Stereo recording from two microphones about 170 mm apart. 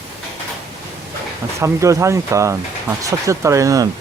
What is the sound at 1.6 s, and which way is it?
Speech, 15° right (ahead or behind).